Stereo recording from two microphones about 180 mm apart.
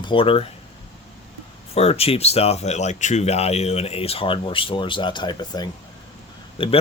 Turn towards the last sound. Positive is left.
turn(degrees=30)  # may be behind; listen again after turning